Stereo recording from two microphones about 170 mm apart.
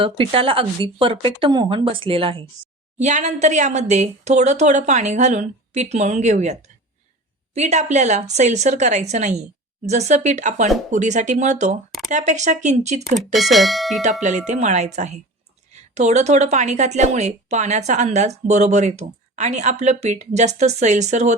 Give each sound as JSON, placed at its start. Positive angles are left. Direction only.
{"t": 0.0, "sound": "speech", "side_deg": -35}
{"t": 3.0, "sound": "a woman's voice", "side_deg": -45}
{"t": 13.3, "sound": "speech", "side_deg": 0}
{"t": 14.0, "sound": "a woman's voice", "side_deg": -45}